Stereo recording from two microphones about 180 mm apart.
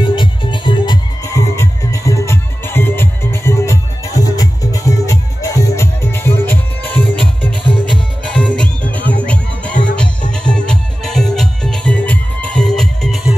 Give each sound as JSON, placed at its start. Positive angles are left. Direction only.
{"t": 0.0, "sound": "music", "side_deg": 25}